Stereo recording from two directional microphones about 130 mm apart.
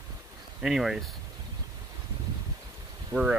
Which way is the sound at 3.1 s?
35° right (ahead or behind).